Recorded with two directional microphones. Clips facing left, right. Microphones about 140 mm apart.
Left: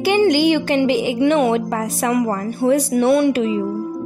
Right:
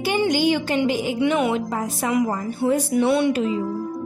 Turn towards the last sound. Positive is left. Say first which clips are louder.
# left 4 dB
turn(degrees=55)  # may be behind; listen again after turning